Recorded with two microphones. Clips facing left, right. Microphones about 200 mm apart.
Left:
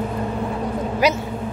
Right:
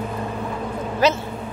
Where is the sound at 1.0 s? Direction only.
10° left (ahead or behind).